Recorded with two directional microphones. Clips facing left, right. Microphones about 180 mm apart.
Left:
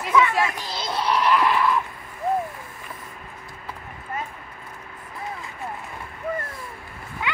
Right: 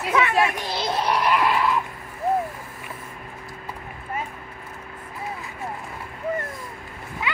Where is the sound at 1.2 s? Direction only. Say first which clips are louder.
Left 2 dB; 15° right (ahead or behind).